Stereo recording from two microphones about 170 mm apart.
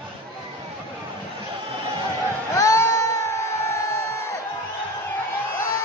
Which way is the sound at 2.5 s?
15° left (ahead or behind).